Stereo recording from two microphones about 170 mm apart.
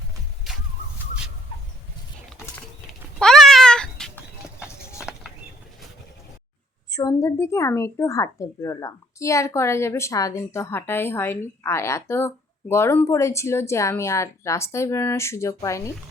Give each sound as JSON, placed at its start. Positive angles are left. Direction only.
{"t": 3.2, "sound": "goat", "side_deg": 5}
{"t": 6.9, "sound": "a woman's voice", "side_deg": 25}